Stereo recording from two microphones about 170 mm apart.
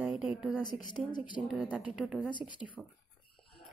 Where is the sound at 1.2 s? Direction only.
5° right (ahead or behind).